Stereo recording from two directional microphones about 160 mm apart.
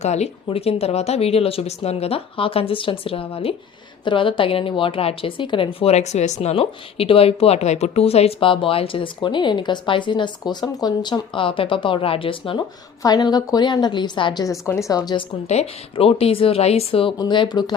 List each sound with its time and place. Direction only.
0.0 s a woman's voice: 45° left (ahead or behind); by 15.2 s 25° left (ahead or behind)
15.4 s a woman's voice: 40° left (ahead or behind)